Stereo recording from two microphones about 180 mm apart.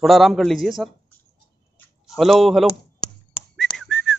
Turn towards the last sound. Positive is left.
turn(degrees=0)  # may be behind; listen again after turning